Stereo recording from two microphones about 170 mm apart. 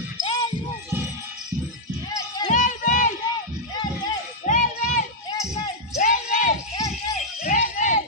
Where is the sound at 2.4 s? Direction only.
50° left (ahead or behind).